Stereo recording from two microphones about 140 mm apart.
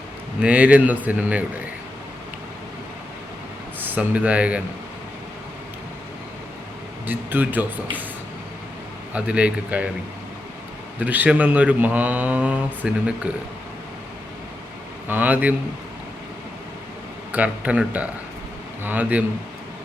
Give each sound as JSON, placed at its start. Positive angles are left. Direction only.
{"t": 0.4, "sound": "speech", "side_deg": -10}
{"t": 3.8, "sound": "speech", "side_deg": -10}
{"t": 7.1, "sound": "speech", "side_deg": -15}
{"t": 9.1, "sound": "speech", "side_deg": -10}
{"t": 11.0, "sound": "speech", "side_deg": -10}
{"t": 15.0, "sound": "speech", "side_deg": -15}
{"t": 17.3, "sound": "speech", "side_deg": -10}